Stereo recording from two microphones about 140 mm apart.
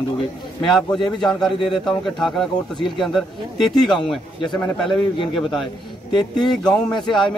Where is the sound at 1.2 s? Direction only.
5° left (ahead or behind).